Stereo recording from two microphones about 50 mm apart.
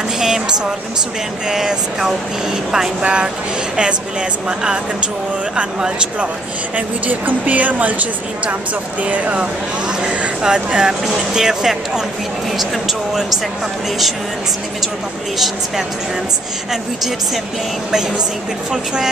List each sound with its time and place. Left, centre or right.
0.2 s music: centre
1.5 s speech: centre
3.0 s speech: centre
4.5 s speech: centre
7.1 s speech: right; by 13.4 s centre
15.3 s speech: centre